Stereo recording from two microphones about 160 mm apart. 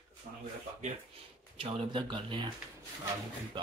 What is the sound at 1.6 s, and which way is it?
Speech, 30° right (ahead or behind).